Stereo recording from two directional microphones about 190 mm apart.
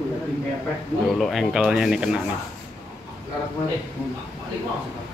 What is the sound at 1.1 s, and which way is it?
Speech, centre (ahead or behind).